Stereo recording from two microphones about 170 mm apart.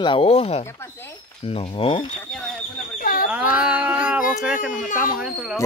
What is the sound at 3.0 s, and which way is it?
Livestock, 55° left (ahead or behind).